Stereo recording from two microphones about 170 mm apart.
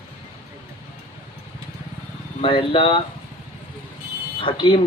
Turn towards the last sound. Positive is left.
turn(degrees=30)  # may be behind; listen again after turning